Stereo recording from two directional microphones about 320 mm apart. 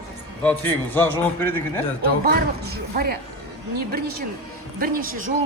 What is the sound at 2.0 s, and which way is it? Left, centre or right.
Speech, right.